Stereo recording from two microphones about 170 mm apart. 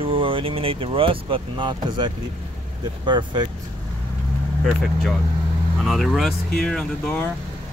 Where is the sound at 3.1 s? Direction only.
25° right (ahead or behind).